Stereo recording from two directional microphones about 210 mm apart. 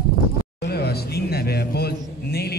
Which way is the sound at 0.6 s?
50° left (ahead or behind).